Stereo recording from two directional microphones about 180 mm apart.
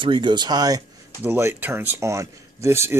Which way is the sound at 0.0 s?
25° right (ahead or behind).